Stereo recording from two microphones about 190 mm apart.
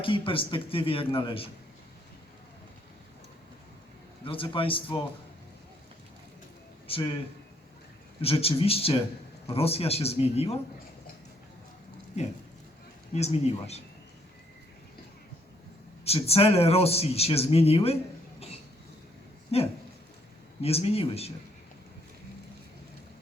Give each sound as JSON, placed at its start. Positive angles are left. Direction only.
{"t": 0.0, "sound": "speech", "side_deg": 25}
{"t": 4.3, "sound": "speech", "side_deg": 30}
{"t": 6.8, "sound": "a man's voice", "side_deg": 30}
{"t": 8.2, "sound": "a man's voice", "side_deg": 30}
{"t": 13.1, "sound": "a man's voice", "side_deg": 35}
{"t": 16.0, "sound": "a man's voice", "side_deg": 30}
{"t": 18.3, "sound": "cough", "side_deg": 30}
{"t": 19.5, "sound": "a man's voice", "side_deg": 30}